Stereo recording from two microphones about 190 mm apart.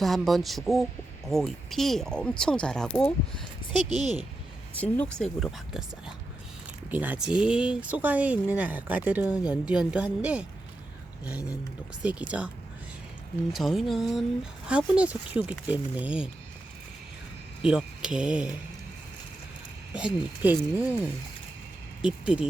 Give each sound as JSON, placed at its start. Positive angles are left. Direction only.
{"t": 0.0, "sound": "speech", "side_deg": 0}
{"t": 3.7, "sound": "speech", "side_deg": 20}
{"t": 4.0, "sound": "speech", "side_deg": -35}
{"t": 4.8, "sound": "speech", "side_deg": 5}
{"t": 12.0, "sound": "speech", "side_deg": -5}
{"t": 13.5, "sound": "speech", "side_deg": 0}
{"t": 17.6, "sound": "speech", "side_deg": -5}
{"t": 19.9, "sound": "speech", "side_deg": -5}
{"t": 22.0, "sound": "speech", "side_deg": -5}